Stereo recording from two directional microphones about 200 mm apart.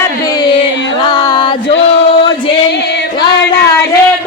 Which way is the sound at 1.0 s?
20° left (ahead or behind).